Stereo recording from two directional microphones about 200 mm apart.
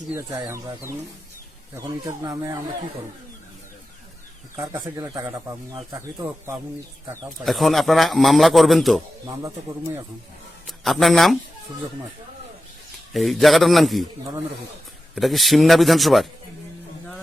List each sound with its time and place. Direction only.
0.1 s speech: 15° right (ahead or behind)
4.9 s speech: 15° right (ahead or behind)
7.4 s a man's voice: centre (ahead or behind)
10.7 s a man's voice: centre (ahead or behind)
13.1 s a man's voice: centre (ahead or behind)
15.1 s a man's voice: centre (ahead or behind)